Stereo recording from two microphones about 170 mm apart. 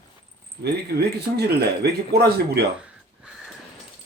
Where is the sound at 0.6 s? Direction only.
70° right (ahead or behind).